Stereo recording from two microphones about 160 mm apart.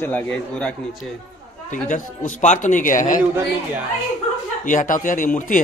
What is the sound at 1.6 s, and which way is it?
A man's voice, 55° left (ahead or behind).